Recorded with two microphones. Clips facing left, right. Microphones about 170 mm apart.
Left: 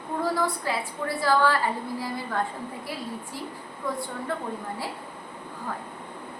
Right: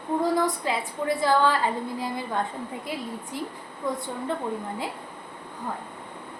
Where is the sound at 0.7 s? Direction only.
20° right (ahead or behind).